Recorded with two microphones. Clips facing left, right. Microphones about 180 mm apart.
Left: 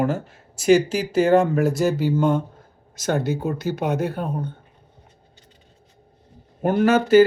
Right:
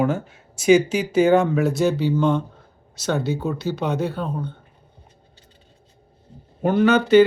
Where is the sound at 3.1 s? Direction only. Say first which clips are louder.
Even; 55° left (ahead or behind).